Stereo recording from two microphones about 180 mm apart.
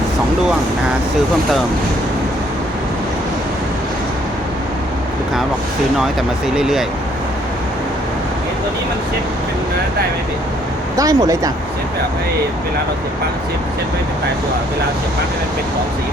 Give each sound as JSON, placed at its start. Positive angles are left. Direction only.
{"t": 6.6, "sound": "speech", "side_deg": 0}
{"t": 10.9, "sound": "speech", "side_deg": -20}